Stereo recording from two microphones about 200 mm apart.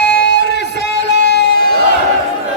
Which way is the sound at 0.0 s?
60° left (ahead or behind).